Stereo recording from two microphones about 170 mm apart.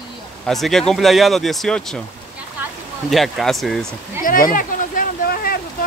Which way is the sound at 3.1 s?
Centre (ahead or behind).